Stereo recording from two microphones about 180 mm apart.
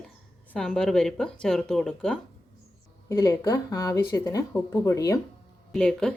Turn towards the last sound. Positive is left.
turn(degrees=5)  # may be behind; listen again after turning